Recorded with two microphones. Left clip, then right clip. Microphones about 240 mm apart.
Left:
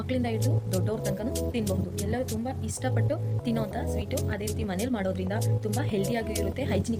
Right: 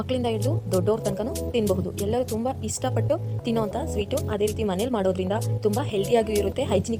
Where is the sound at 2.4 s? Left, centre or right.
Right.